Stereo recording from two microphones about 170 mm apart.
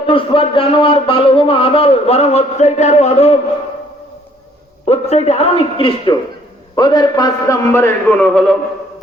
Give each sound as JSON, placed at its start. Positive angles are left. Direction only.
{"t": 0.0, "sound": "speech", "side_deg": 30}
{"t": 4.9, "sound": "a man's voice", "side_deg": 40}